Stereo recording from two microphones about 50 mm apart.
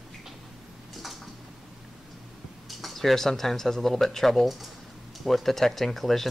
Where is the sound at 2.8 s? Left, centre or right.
Centre.